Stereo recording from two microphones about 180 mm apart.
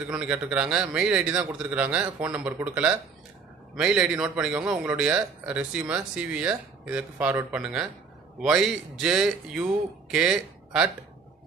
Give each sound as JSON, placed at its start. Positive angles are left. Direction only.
{"t": 0.0, "sound": "a man's voice", "side_deg": -5}